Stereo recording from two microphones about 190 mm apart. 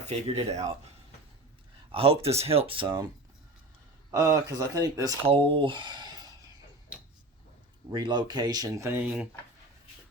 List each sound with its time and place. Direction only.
0.1 s speech: 35° right (ahead or behind)
1.9 s speech: 30° right (ahead or behind)
4.1 s speech: 20° right (ahead or behind)
5.2 s speech: 30° right (ahead or behind)
7.9 s speech: 25° right (ahead or behind)